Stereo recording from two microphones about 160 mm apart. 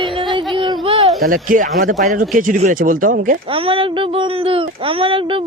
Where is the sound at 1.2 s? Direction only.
60° right (ahead or behind).